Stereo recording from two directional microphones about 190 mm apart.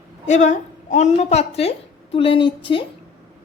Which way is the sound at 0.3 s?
40° left (ahead or behind).